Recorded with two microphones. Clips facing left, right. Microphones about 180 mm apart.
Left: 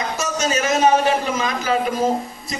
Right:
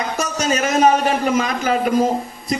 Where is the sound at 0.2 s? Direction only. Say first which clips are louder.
Right 1 dB; 35° right (ahead or behind).